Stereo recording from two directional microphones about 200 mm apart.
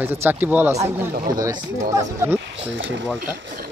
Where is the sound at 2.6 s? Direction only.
65° right (ahead or behind).